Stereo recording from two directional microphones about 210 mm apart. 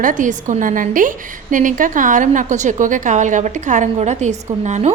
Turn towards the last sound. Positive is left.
turn(degrees=-30)  # may be behind; listen again after turning